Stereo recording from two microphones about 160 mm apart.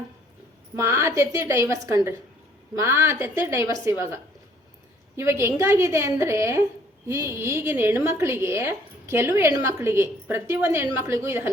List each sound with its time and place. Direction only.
0.8 s a woman's voice: 15° right (ahead or behind)